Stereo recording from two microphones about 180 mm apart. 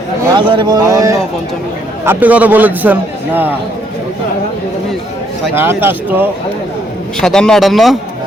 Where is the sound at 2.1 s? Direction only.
10° right (ahead or behind).